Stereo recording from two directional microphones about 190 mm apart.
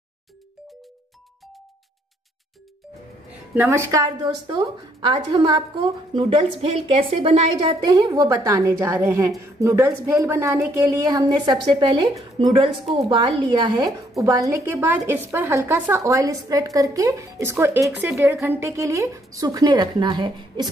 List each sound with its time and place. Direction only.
3.5 s a woman's voice: 10° right (ahead or behind); by 7.9 s 30° right (ahead or behind)
7.9 s a woman's voice: 20° right (ahead or behind)